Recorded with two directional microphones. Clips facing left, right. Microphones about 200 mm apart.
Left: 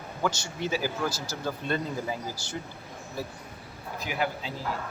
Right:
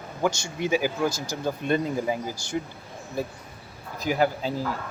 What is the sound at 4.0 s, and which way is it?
Speech, 40° right (ahead or behind).